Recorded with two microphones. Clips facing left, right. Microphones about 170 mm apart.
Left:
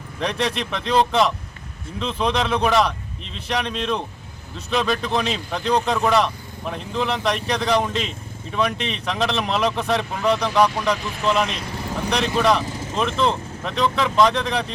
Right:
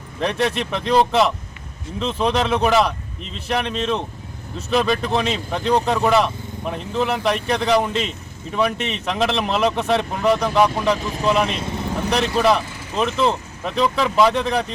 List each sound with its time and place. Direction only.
0.2 s speech: 5° right (ahead or behind)
11.4 s speech: 30° right (ahead or behind)
12.1 s speech: 5° right (ahead or behind)